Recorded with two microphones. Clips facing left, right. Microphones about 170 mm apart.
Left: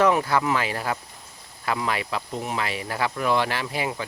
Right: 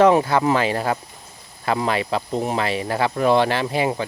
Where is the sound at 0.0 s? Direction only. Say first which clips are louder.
Right 5 dB; 25° right (ahead or behind).